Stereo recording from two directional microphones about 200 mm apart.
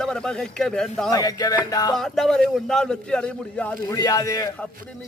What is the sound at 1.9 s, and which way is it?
A man's voice, 5° left (ahead or behind).